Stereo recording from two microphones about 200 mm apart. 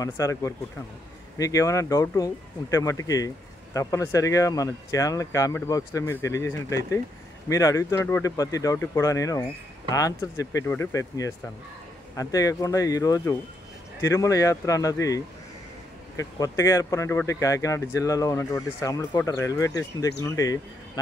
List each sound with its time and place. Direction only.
0.0 s speech: 15° left (ahead or behind)